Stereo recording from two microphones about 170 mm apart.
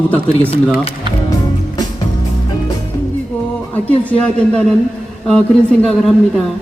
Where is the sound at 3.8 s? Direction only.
10° left (ahead or behind).